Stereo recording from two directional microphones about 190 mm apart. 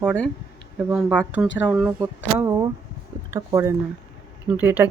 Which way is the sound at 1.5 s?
5° right (ahead or behind).